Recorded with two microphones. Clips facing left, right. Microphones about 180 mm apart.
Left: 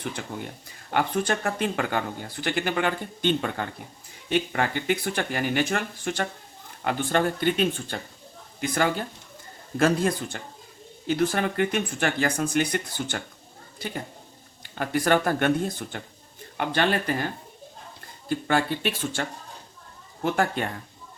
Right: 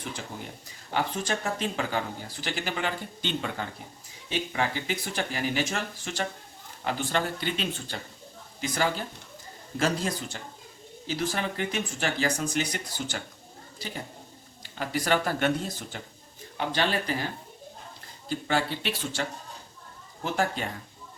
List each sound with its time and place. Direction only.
0.9 s speech: 60° left (ahead or behind)
14.6 s speech: 55° left (ahead or behind)
18.3 s speech: 55° left (ahead or behind)
20.2 s speech: 60° left (ahead or behind)